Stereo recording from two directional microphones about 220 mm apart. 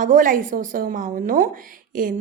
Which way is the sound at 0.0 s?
35° right (ahead or behind).